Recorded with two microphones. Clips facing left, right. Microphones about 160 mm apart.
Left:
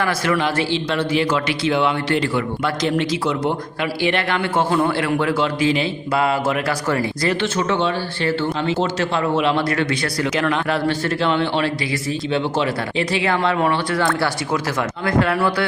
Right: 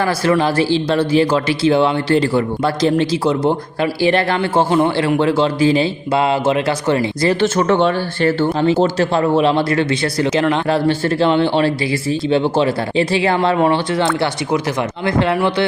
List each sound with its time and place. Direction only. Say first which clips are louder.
0.0 s a man's voice: right 4 dB; 30° right (ahead or behind)
7.4 s a man's voice: right 8 dB; 45° right (ahead or behind); by 15.6 s 25° right (ahead or behind)